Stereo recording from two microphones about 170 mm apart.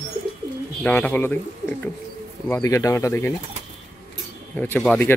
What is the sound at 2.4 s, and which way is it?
Speech, 15° left (ahead or behind).